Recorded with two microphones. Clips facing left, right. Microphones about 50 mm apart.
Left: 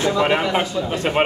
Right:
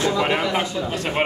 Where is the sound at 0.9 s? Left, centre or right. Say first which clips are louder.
Left 4 dB; left.